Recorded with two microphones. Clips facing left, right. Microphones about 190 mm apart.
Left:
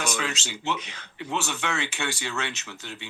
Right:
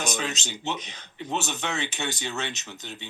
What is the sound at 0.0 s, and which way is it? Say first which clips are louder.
Speech: even; 20° right (ahead or behind).